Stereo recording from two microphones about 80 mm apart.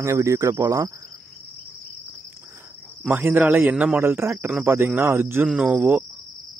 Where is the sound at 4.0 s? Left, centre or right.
Right.